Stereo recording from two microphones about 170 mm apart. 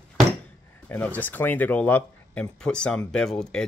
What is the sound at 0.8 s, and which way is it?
Speech, 10° left (ahead or behind).